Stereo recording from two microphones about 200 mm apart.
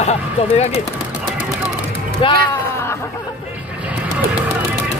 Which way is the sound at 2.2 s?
25° left (ahead or behind).